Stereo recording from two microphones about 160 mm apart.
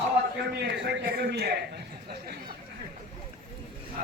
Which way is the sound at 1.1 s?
90° right.